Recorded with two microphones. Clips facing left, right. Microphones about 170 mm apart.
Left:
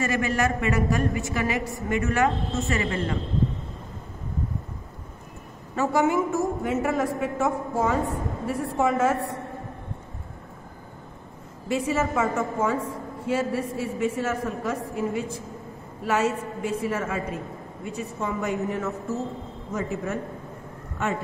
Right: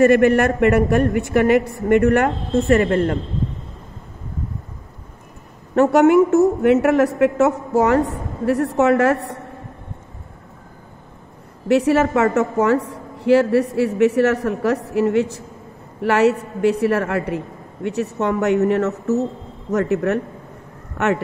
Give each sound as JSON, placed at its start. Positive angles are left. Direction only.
{"t": 0.0, "sound": "a woman's voice", "side_deg": -60}
{"t": 5.8, "sound": "a woman's voice", "side_deg": -70}
{"t": 11.6, "sound": "a woman's voice", "side_deg": -70}